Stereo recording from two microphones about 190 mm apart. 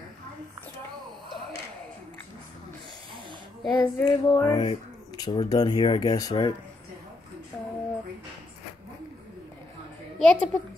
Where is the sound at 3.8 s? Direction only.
20° left (ahead or behind).